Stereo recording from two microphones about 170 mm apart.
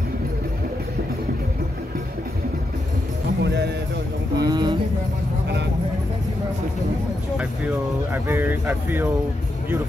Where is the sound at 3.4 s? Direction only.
85° right.